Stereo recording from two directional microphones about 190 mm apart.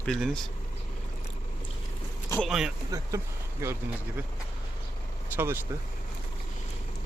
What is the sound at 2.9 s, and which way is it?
Speech, 15° right (ahead or behind).